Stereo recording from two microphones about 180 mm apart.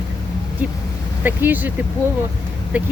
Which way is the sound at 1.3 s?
10° right (ahead or behind).